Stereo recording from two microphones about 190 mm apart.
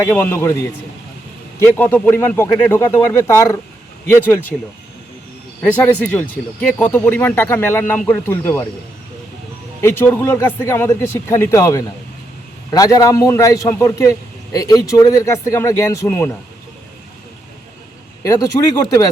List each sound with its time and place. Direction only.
0.0 s a man's voice: 15° left (ahead or behind)
1.5 s a man's voice: 15° left (ahead or behind)
5.6 s a man's voice: 10° left (ahead or behind)
9.8 s a man's voice: 10° left (ahead or behind)
18.2 s a man's voice: 15° left (ahead or behind)